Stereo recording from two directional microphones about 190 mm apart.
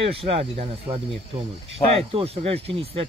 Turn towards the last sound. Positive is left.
turn(degrees=-30)  # may be behind; listen again after turning